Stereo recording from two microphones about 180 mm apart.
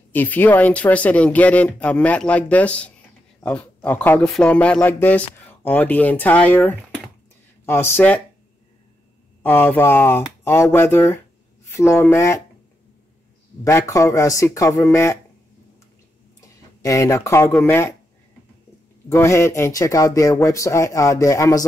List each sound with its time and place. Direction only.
0.1 s speech: 10° left (ahead or behind)
9.4 s speech: 10° left (ahead or behind)
13.7 s speech: 15° left (ahead or behind)
16.3 s speech: 15° left (ahead or behind)
19.0 s speech: 15° left (ahead or behind)